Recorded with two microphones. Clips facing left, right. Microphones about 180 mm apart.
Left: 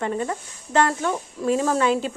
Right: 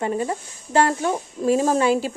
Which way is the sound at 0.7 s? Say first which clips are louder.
Right 2 dB; 30° right (ahead or behind).